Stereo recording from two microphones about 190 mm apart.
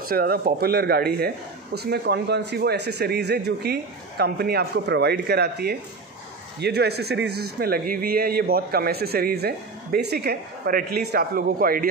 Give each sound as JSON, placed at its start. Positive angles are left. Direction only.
{"t": 0.1, "sound": "speech", "side_deg": -50}